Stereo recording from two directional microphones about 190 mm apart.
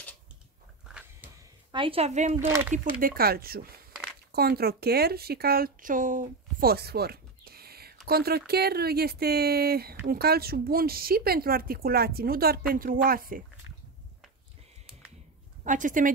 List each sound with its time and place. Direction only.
1.7 s a woman's voice: 25° right (ahead or behind)
2.3 s speech: 15° right (ahead or behind)
2.7 s speech: 45° right (ahead or behind)
15.6 s speech: 40° right (ahead or behind)